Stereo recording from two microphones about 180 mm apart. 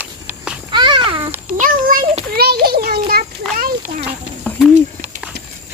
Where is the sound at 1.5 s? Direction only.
50° right (ahead or behind).